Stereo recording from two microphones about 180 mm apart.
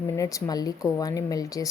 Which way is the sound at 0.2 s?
20° left (ahead or behind).